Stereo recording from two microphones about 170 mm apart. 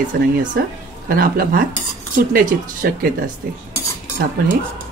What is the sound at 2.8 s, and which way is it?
Speech, 65° right (ahead or behind).